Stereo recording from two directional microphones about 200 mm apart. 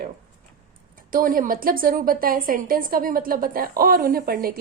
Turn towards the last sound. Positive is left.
turn(degrees=-50)  # may be behind; listen again after turning